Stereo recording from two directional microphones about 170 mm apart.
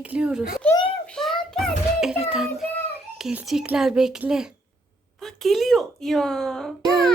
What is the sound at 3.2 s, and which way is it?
Speech, 5° right (ahead or behind).